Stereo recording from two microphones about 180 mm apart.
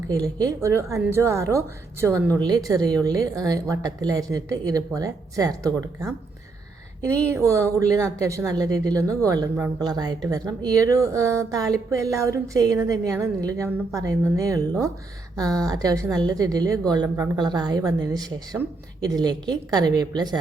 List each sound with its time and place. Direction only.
0.1 s a woman's voice: 20° right (ahead or behind)